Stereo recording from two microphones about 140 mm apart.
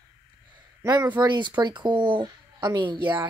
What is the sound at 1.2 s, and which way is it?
Speech, 35° right (ahead or behind).